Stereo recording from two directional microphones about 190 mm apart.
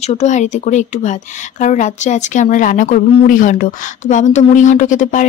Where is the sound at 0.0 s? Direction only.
35° left (ahead or behind).